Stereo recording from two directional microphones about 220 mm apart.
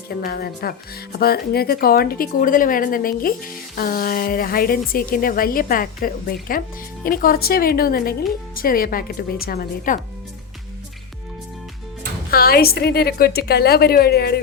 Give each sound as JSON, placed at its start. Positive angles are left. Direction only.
{"t": 0.1, "sound": "a woman's voice", "side_deg": 45}
{"t": 12.3, "sound": "a woman's voice", "side_deg": 45}